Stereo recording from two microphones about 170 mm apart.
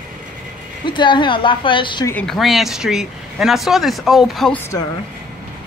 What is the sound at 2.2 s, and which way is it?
Speech, centre (ahead or behind).